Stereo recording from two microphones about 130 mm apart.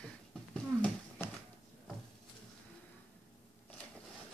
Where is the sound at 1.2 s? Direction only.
20° left (ahead or behind).